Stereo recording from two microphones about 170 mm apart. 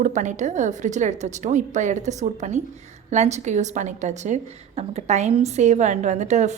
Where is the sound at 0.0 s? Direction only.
45° right (ahead or behind).